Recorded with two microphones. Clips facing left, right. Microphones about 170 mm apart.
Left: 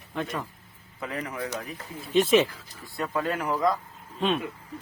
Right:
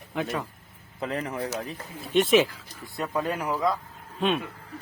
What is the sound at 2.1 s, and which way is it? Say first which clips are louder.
Speech: even; centre (ahead or behind).